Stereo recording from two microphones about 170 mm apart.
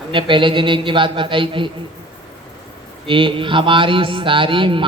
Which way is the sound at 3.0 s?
30° right (ahead or behind).